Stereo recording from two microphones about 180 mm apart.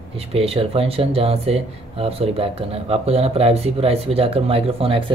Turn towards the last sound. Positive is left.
turn(degrees=-30)  # may be behind; listen again after turning